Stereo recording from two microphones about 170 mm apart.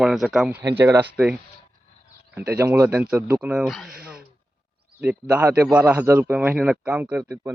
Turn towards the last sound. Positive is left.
turn(degrees=-10)  # may be behind; listen again after turning